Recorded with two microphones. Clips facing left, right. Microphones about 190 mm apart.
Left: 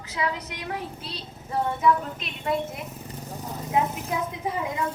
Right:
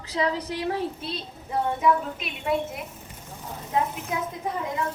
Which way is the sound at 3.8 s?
20° left (ahead or behind).